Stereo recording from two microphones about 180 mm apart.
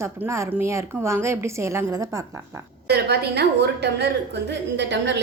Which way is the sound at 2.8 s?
65° right (ahead or behind).